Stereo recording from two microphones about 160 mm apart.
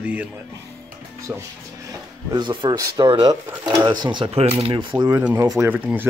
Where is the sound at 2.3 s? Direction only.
30° right (ahead or behind).